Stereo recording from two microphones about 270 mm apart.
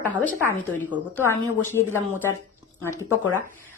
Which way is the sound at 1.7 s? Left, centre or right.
Centre.